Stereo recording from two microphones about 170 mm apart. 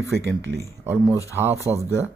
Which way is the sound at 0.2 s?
90° right.